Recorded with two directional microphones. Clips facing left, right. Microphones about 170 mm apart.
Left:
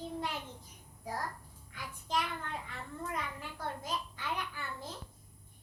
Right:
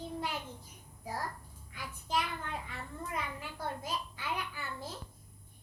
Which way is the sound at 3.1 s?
10° right (ahead or behind).